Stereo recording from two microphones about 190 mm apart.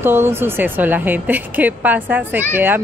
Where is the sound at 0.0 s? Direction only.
10° right (ahead or behind).